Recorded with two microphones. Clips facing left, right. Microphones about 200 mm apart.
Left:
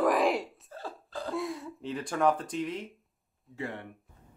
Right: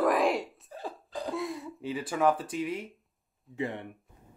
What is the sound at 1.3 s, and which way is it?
Speech, centre (ahead or behind).